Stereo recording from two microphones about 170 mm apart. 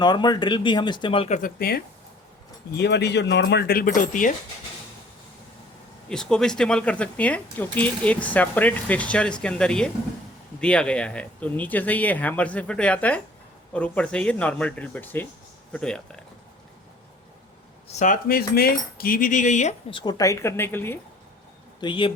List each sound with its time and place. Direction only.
0.0 s speech: 25° left (ahead or behind)
1.3 s speech: 55° left (ahead or behind)
2.7 s speech: 90° left; by 4.4 s 50° left (ahead or behind)
6.1 s speech: 5° left (ahead or behind)
17.8 s cutlery: 50° left (ahead or behind)
19.9 s speech: 25° left (ahead or behind)
21.8 s speech: 30° left (ahead or behind)